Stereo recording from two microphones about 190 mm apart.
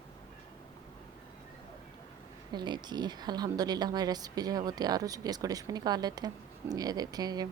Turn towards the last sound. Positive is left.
turn(degrees=-20)  # may be behind; listen again after turning